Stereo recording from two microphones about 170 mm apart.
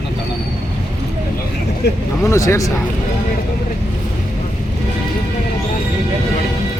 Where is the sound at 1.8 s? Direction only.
80° left.